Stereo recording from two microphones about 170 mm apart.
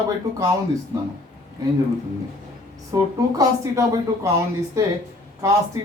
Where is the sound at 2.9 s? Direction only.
20° right (ahead or behind).